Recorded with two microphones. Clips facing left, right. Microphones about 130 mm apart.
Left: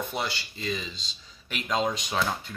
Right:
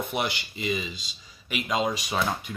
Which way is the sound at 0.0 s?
20° right (ahead or behind).